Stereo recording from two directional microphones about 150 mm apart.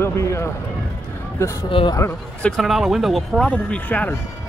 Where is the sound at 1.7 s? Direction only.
35° left (ahead or behind).